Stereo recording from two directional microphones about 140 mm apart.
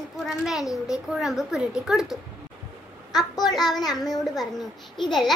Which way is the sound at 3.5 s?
Centre (ahead or behind).